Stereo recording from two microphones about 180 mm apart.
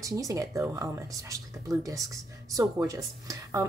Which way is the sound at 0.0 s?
20° right (ahead or behind).